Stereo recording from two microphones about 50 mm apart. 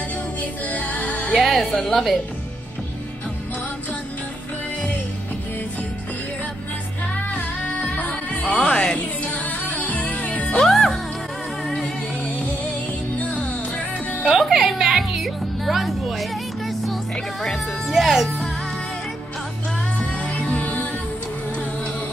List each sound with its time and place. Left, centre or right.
0.4 s music: left
1.3 s a woman's voice: centre
8.1 s music: left
9.2 s music: left
10.6 s music: centre
13.2 s music: left
14.3 s music: centre
15.2 s music: centre
20.2 s music: left